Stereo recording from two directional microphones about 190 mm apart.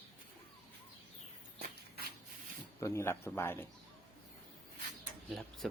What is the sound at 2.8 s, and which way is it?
Speech, 15° left (ahead or behind).